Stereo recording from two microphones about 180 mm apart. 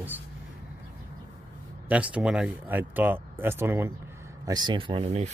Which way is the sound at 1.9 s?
5° right (ahead or behind).